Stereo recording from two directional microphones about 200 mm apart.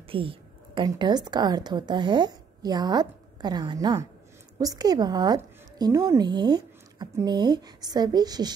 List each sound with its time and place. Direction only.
0.1 s a woman's voice: 25° right (ahead or behind)